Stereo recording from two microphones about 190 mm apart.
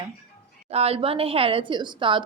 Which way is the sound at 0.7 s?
30° right (ahead or behind).